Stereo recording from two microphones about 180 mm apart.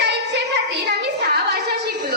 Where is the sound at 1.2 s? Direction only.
60° right (ahead or behind).